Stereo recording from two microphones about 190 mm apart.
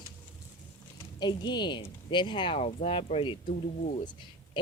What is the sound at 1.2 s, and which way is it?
A woman's voice, 25° left (ahead or behind).